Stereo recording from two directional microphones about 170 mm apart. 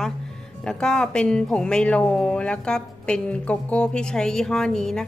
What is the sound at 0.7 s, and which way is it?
Speech, 5° left (ahead or behind).